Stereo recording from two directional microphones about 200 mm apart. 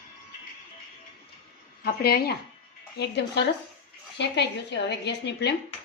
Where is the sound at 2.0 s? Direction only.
50° left (ahead or behind).